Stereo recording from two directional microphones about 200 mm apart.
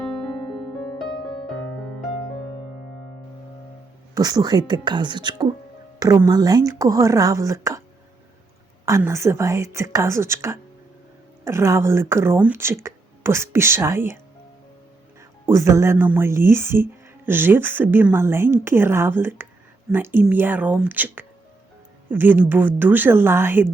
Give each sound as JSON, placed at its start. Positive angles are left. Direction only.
{"t": 4.1, "sound": "a woman's voice", "side_deg": -20}
{"t": 8.9, "sound": "speech", "side_deg": -15}
{"t": 15.4, "sound": "speech", "side_deg": -15}